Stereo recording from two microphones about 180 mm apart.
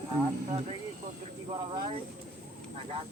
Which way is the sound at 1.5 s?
25° right (ahead or behind).